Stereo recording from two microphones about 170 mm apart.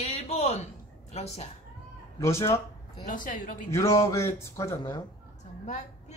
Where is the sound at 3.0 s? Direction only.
50° left (ahead or behind).